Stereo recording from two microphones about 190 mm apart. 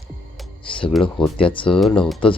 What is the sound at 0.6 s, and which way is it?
Speech, 25° left (ahead or behind).